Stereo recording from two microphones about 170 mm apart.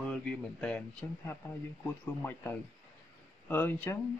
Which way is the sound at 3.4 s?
10° left (ahead or behind).